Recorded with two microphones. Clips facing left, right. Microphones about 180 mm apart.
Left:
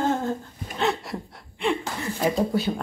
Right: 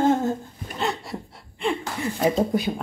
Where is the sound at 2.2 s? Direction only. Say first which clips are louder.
Right 1 dB; 20° right (ahead or behind).